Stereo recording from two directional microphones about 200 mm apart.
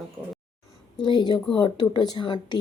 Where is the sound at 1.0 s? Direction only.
20° left (ahead or behind).